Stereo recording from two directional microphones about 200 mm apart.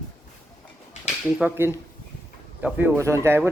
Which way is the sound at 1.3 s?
10° right (ahead or behind).